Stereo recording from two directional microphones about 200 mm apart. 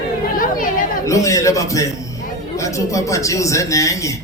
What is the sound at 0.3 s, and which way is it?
Chatter, 45° left (ahead or behind).